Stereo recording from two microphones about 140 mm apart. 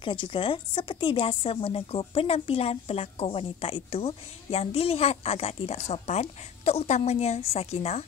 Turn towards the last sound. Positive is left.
turn(degrees=50)  # may be behind; listen again after turning